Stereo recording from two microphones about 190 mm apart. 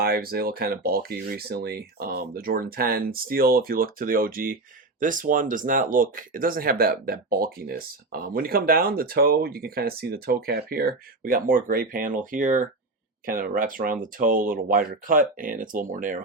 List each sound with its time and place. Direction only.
0.0 s speech: 50° right (ahead or behind)